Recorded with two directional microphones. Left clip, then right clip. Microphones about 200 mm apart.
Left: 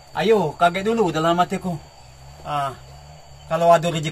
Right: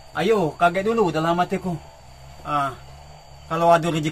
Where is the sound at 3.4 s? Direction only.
Centre (ahead or behind).